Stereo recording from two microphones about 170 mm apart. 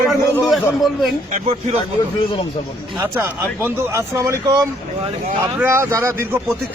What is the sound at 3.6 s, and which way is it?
Speech, 15° right (ahead or behind).